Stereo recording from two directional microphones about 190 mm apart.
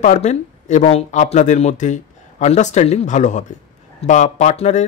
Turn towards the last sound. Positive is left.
turn(degrees=35)  # may be behind; listen again after turning